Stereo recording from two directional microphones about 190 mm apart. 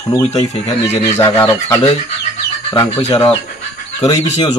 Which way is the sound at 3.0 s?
35° left (ahead or behind).